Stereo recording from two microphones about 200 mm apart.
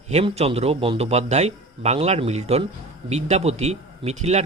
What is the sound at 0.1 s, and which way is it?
Speech, 30° right (ahead or behind).